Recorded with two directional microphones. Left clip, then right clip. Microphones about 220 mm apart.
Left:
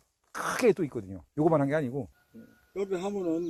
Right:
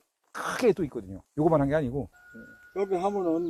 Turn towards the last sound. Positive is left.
turn(degrees=25)  # may be behind; listen again after turning